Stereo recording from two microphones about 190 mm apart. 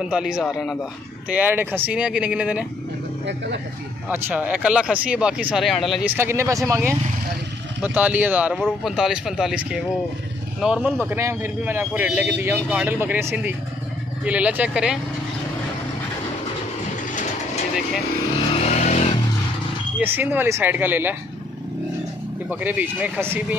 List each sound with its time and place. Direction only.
0.0 s speech: 5° right (ahead or behind)
1.3 s speech: 10° right (ahead or behind)
3.3 s speech: 65° right (ahead or behind)
4.1 s speech: 10° right (ahead or behind)
6.1 s speech: 15° right (ahead or behind)
18.6 s vehicle: 35° left (ahead or behind)
20.0 s speech: 10° right (ahead or behind)
22.5 s speech: 10° right (ahead or behind)